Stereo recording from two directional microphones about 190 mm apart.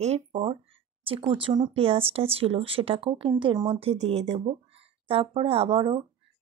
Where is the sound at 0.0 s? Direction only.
30° right (ahead or behind).